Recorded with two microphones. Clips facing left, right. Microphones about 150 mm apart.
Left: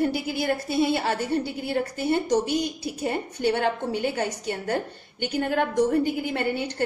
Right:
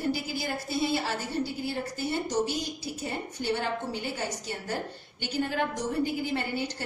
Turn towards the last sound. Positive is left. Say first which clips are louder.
# left 4 dB
turn(degrees=60)  # may be behind; listen again after turning